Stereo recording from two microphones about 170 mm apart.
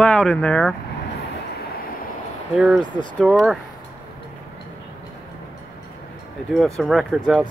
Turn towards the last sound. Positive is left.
turn(degrees=0)  # may be behind; listen again after turning